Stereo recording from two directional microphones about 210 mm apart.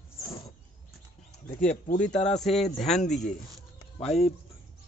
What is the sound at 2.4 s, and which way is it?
Speech, centre (ahead or behind).